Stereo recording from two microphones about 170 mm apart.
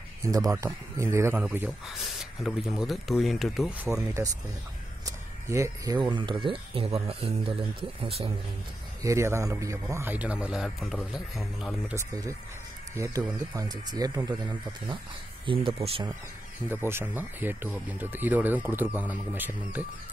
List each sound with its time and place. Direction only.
0.2 s speech: 20° right (ahead or behind); by 3.7 s centre (ahead or behind)
3.8 s speech: 15° right (ahead or behind); by 8.3 s 35° right (ahead or behind)
9.0 s speech: 15° right (ahead or behind)
11.9 s speech: 20° right (ahead or behind)
16.6 s speech: 15° right (ahead or behind)